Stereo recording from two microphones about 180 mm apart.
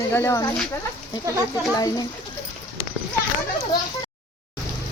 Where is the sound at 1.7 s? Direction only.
20° left (ahead or behind).